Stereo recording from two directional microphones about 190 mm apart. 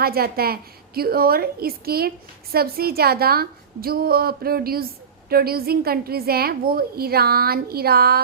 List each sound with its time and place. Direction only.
0.0 s a woman's voice: 55° right (ahead or behind)